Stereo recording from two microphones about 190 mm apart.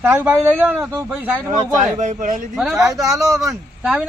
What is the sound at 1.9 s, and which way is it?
Speech, 40° right (ahead or behind).